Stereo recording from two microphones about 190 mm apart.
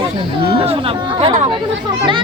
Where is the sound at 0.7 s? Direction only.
30° right (ahead or behind).